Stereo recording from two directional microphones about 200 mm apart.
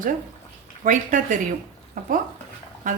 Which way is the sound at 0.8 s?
40° right (ahead or behind).